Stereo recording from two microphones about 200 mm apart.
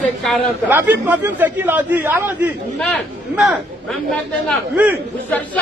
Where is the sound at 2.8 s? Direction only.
5° left (ahead or behind).